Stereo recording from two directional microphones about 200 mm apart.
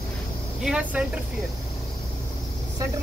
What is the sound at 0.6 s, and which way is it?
Vehicle, 5° right (ahead or behind).